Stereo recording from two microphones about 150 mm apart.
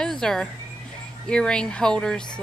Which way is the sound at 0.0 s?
5° left (ahead or behind).